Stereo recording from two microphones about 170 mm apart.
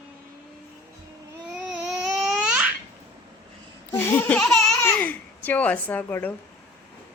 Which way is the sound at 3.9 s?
15° left (ahead or behind).